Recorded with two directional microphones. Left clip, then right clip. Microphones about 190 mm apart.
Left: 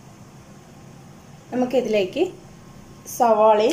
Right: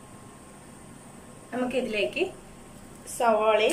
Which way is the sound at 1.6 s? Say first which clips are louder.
Left 7 dB; 30° left (ahead or behind).